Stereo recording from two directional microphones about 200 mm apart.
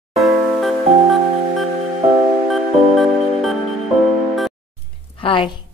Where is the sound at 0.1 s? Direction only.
Centre (ahead or behind).